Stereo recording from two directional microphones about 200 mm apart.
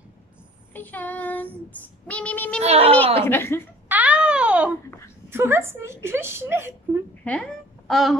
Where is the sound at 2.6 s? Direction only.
30° right (ahead or behind).